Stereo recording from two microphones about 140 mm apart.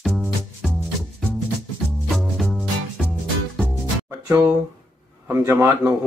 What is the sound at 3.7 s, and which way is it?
Music, 20° right (ahead or behind).